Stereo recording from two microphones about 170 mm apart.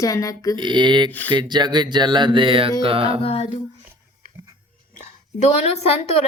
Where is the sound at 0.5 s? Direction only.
25° right (ahead or behind).